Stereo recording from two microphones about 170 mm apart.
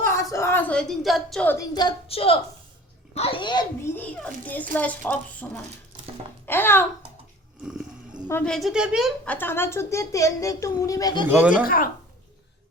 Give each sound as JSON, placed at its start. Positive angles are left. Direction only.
{"t": 0.0, "sound": "a woman's voice", "side_deg": 15}
{"t": 1.5, "sound": "a child's voice", "side_deg": 25}
{"t": 2.0, "sound": "a woman's voice", "side_deg": 35}
{"t": 3.9, "sound": "a woman's voice", "side_deg": 10}
{"t": 7.6, "sound": "a sound", "side_deg": -5}
{"t": 8.3, "sound": "a woman's voice", "side_deg": 5}
{"t": 9.3, "sound": "a woman's voice", "side_deg": 10}
{"t": 11.3, "sound": "speech", "side_deg": -10}
{"t": 11.6, "sound": "speech", "side_deg": 60}